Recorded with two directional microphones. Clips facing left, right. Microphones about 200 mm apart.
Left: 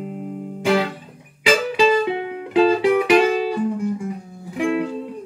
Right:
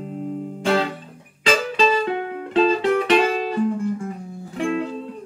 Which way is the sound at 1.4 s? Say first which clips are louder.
Left 2 dB; 10° left (ahead or behind).